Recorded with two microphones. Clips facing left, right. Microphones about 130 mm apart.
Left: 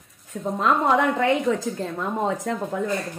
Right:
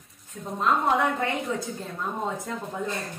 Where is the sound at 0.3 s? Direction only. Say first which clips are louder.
Left 3 dB; 90° left.